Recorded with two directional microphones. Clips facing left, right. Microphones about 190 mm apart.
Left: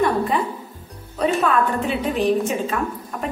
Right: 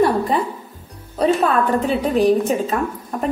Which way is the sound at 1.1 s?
35° right (ahead or behind).